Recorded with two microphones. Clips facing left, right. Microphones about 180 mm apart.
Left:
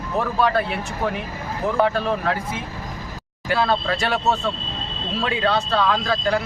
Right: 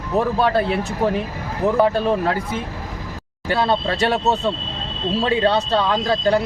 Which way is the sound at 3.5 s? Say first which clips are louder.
Right 1 dB; 25° right (ahead or behind).